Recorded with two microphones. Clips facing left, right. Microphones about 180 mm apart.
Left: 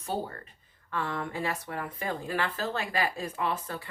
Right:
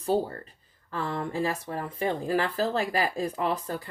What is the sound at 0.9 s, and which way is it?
Speech, 35° right (ahead or behind).